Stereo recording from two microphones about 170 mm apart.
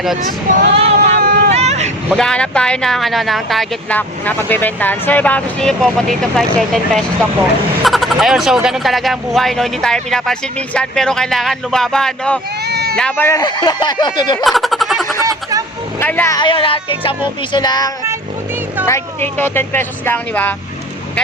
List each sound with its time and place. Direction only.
0.7 s vehicle: 35° right (ahead or behind)
1.2 s vehicle: 60° right (ahead or behind)
1.5 s vehicle: 40° right (ahead or behind)
2.1 s speech: 5° left (ahead or behind)
12.6 s a sound: 70° right (ahead or behind)
13.0 s speech: 10° left (ahead or behind); by 14.3 s 25° left (ahead or behind)
14.3 s a sound: centre (ahead or behind)
15.2 s a sound: 20° right (ahead or behind)
16.0 s speech: 10° left (ahead or behind)
16.4 s speech: 30° left (ahead or behind); by 20.6 s 10° left (ahead or behind)